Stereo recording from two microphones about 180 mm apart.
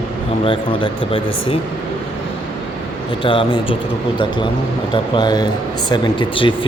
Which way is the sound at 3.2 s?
30° left (ahead or behind).